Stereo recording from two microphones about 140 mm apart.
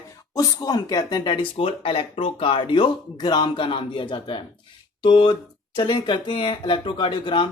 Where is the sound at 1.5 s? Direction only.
40° left (ahead or behind).